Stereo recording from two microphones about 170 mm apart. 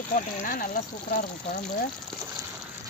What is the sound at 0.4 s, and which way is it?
Speech, 50° left (ahead or behind).